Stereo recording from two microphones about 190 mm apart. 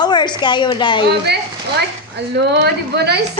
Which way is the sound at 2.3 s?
60° right (ahead or behind).